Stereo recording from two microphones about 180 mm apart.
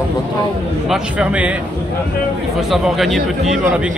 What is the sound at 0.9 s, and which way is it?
Speech, 5° right (ahead or behind).